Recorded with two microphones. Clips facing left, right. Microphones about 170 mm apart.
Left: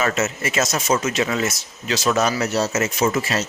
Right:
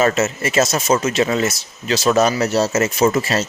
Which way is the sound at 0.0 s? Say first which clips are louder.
Right 5 dB; 35° right (ahead or behind).